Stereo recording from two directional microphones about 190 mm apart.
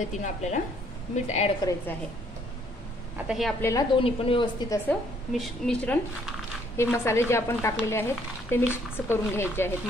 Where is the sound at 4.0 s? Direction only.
25° left (ahead or behind).